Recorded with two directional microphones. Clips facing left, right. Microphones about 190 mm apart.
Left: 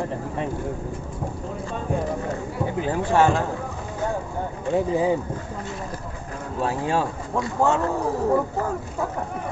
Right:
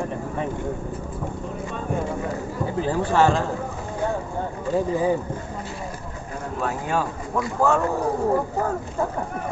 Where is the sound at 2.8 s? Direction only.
15° left (ahead or behind).